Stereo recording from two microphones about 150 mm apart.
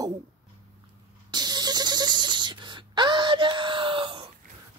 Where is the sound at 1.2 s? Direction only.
30° right (ahead or behind).